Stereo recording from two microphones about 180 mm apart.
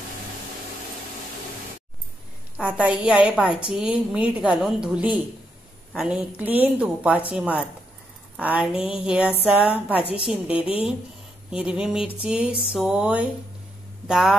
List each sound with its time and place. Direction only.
2.5 s a woman's voice: 5° right (ahead or behind)